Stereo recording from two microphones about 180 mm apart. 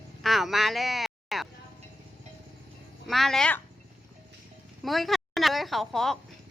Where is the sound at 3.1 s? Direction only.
Centre (ahead or behind).